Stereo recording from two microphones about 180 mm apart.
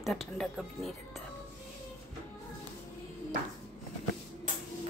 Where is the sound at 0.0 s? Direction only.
Centre (ahead or behind).